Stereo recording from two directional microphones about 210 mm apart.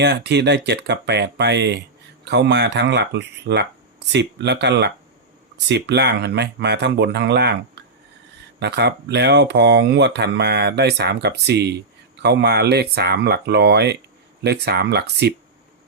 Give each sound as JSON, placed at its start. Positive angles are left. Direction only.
{"t": 0.0, "sound": "speech", "side_deg": -55}